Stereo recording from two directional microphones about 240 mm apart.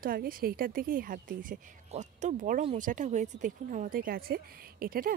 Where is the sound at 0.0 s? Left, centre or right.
Right.